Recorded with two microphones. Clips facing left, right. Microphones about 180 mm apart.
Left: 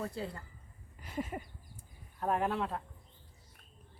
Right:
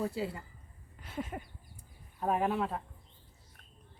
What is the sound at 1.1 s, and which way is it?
Speech, 5° left (ahead or behind).